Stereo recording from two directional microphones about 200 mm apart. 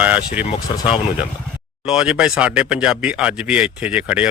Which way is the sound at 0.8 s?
25° left (ahead or behind).